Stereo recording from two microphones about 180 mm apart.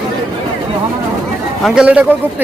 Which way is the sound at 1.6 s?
5° right (ahead or behind).